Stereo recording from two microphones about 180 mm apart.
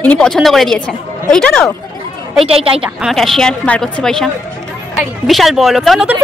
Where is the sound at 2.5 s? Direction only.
30° right (ahead or behind).